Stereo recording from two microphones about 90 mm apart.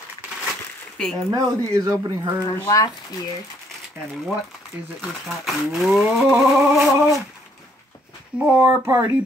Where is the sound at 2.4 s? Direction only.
40° left (ahead or behind).